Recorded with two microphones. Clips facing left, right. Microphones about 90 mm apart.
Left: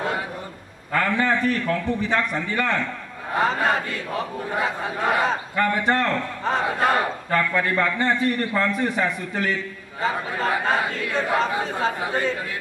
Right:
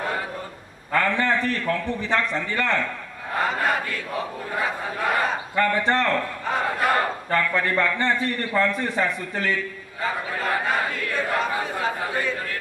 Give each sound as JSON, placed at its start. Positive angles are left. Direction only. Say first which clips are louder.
{"t": 0.9, "sound": "a man's voice", "louder": "even", "side_deg": 15}